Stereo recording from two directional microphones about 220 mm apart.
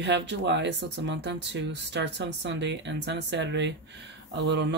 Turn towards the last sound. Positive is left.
turn(degrees=-50)  # may be behind; listen again after turning